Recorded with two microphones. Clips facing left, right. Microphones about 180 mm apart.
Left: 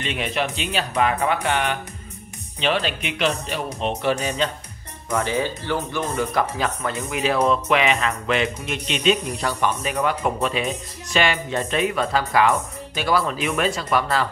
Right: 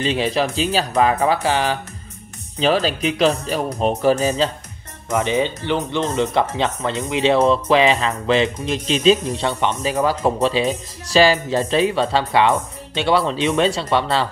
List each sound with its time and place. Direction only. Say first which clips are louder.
0.0 s speech: right 6 dB; 30° right (ahead or behind)
5.1 s speech: right 4 dB; 20° right (ahead or behind)